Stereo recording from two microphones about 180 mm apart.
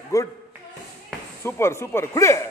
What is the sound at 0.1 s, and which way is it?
Speech, 15° left (ahead or behind).